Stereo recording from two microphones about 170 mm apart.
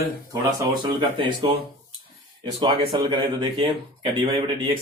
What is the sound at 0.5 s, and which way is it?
Speech, 25° right (ahead or behind).